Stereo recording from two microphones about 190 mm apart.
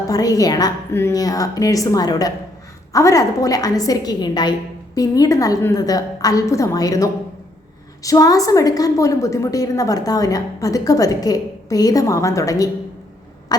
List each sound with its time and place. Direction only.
0.1 s a woman's voice: 20° left (ahead or behind)